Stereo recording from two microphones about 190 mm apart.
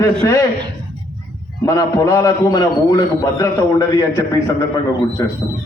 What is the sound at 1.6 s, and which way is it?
A man's voice, 15° left (ahead or behind).